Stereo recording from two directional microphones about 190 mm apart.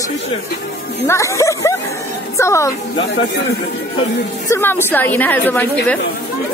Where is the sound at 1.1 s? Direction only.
15° left (ahead or behind).